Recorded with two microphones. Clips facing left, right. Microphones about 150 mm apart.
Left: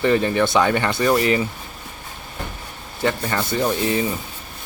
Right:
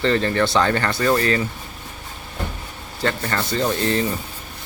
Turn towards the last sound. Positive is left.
turn(degrees=10)  # may be behind; listen again after turning